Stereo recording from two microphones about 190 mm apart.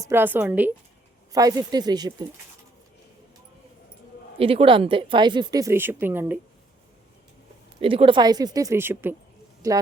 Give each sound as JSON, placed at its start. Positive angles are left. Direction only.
{"t": 0.0, "sound": "a woman's voice", "side_deg": -10}
{"t": 4.4, "sound": "speech", "side_deg": -30}
{"t": 7.8, "sound": "a woman's voice", "side_deg": -30}